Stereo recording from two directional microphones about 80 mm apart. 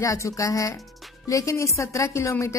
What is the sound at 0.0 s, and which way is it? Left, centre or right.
Speech, left.